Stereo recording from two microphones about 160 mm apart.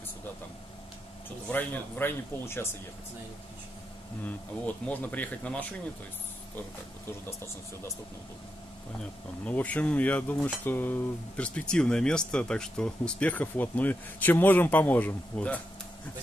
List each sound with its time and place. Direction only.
1.5 s cutlery: 10° left (ahead or behind)
4.8 s cutlery: 10° left (ahead or behind)
9.4 s cutlery: 10° left (ahead or behind)